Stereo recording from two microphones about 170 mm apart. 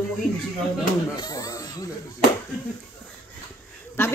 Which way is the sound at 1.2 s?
20° left (ahead or behind).